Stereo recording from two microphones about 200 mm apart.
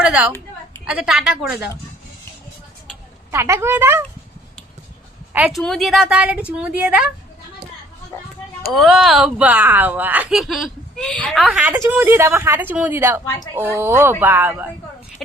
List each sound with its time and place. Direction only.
0.9 s a woman's voice: 5° right (ahead or behind)
3.3 s speech: 15° right (ahead or behind)
5.3 s a woman's voice: 5° right (ahead or behind)
8.1 s a sound: 15° left (ahead or behind)
8.7 s speech: centre (ahead or behind)